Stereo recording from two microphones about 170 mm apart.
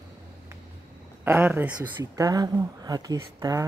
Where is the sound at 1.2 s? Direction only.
10° right (ahead or behind).